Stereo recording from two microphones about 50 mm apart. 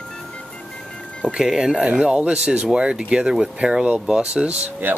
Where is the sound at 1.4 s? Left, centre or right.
Centre.